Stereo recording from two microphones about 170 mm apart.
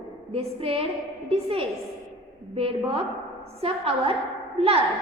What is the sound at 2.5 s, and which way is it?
A woman's voice, 35° right (ahead or behind).